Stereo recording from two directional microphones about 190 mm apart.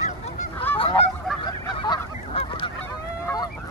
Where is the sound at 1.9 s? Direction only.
25° left (ahead or behind).